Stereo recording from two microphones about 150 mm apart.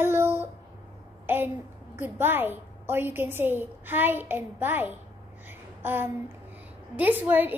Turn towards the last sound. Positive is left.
turn(degrees=-10)  # may be behind; listen again after turning